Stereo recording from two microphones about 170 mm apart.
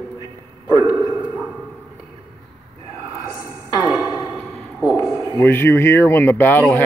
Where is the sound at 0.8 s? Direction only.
25° right (ahead or behind).